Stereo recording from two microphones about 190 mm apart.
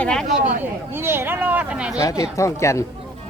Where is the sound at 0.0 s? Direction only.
5° left (ahead or behind).